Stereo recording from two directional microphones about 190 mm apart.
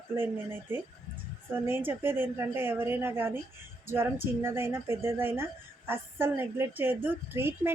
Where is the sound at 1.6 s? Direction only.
10° right (ahead or behind).